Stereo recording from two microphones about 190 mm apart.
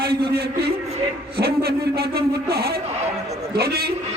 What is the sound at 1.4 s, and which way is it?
A man's voice, 55° right (ahead or behind).